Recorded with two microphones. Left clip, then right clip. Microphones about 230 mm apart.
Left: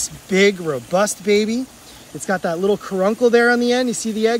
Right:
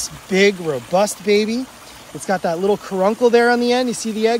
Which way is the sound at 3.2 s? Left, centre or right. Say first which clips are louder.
Even; right.